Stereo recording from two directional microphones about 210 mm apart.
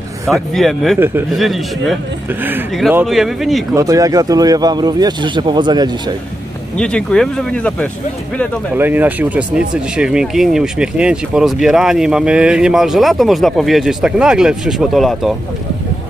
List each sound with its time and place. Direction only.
0.3 s speech: centre (ahead or behind)
0.9 s speech: 10° right (ahead or behind)
1.3 s speech: centre (ahead or behind)
3.7 s speech: 15° right (ahead or behind)
6.8 s speech: 5° left (ahead or behind)
8.7 s speech: 10° right (ahead or behind)